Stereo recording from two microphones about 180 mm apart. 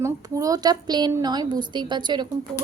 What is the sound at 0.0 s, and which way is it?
A woman's voice, 20° right (ahead or behind).